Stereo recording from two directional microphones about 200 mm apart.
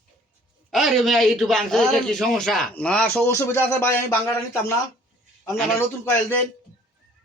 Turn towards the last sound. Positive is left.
turn(degrees=10)  # may be behind; listen again after turning